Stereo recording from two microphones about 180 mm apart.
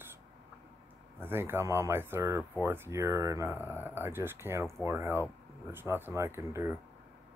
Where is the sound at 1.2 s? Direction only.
15° right (ahead or behind).